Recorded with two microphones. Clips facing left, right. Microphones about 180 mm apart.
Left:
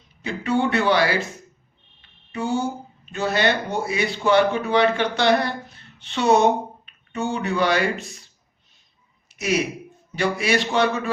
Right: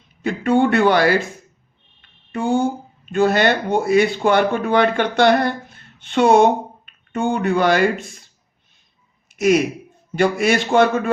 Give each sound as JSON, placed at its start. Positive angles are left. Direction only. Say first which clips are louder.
{"t": 0.2, "sound": "speech", "louder": "right 6 dB", "side_deg": -50}
{"t": 2.0, "sound": "music", "louder": "right 4 dB", "side_deg": -55}
{"t": 3.1, "sound": "speech", "louder": "right 6 dB", "side_deg": -50}
{"t": 9.3, "sound": "speech", "louder": "right 7 dB", "side_deg": -50}